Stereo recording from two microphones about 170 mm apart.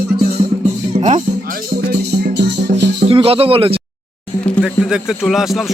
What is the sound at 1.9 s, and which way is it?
Music, 75° right (ahead or behind).